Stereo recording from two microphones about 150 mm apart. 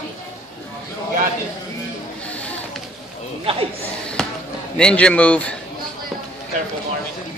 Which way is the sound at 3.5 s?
40° right (ahead or behind).